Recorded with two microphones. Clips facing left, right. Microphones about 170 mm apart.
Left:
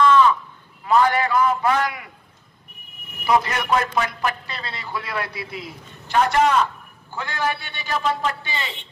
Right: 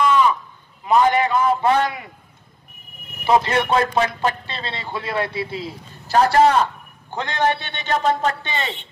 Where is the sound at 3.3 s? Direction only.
25° right (ahead or behind).